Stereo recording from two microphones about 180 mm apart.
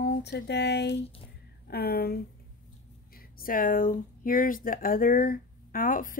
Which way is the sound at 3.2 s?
55° left (ahead or behind).